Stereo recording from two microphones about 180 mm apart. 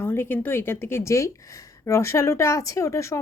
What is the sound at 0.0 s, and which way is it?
A woman's voice, 10° left (ahead or behind).